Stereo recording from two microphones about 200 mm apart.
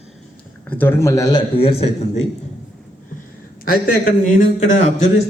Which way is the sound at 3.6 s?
45° left (ahead or behind).